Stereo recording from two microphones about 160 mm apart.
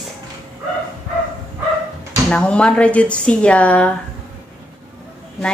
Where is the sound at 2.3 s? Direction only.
5° left (ahead or behind).